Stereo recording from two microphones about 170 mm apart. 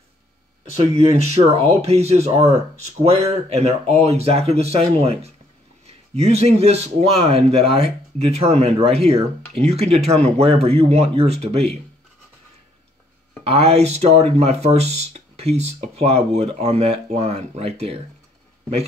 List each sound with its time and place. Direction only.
1.1 s speech: 40° right (ahead or behind)
13.4 s speech: 35° right (ahead or behind)